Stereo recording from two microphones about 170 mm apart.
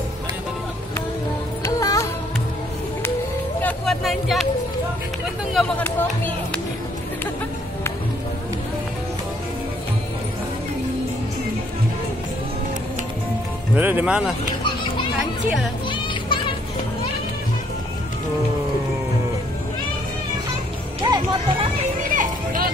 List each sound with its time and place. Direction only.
1.6 s music: 20° left (ahead or behind)
3.6 s vehicle: 5° left (ahead or behind)
5.5 s speech: 5° left (ahead or behind)
13.7 s speech: 10° right (ahead or behind)
15.9 s music: 30° left (ahead or behind)
21.0 s music: 25° right (ahead or behind)
22.1 s music: 50° right (ahead or behind)